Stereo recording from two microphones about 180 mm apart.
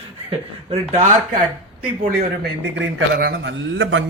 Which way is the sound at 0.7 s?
40° right (ahead or behind).